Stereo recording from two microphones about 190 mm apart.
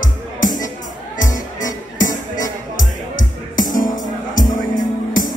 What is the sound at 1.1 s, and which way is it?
Music, 45° left (ahead or behind).